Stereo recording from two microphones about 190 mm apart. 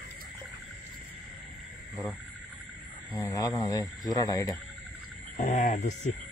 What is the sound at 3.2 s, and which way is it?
Speech, 20° left (ahead or behind).